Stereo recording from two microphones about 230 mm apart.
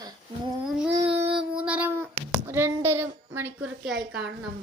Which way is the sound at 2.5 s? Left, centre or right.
Centre.